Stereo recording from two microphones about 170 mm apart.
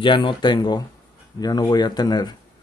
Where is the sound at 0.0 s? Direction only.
30° left (ahead or behind).